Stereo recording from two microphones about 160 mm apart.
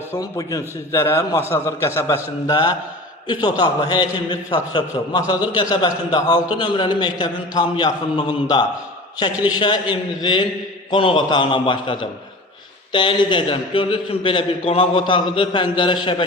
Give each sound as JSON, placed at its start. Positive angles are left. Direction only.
{"t": 0.1, "sound": "a man's voice", "side_deg": 20}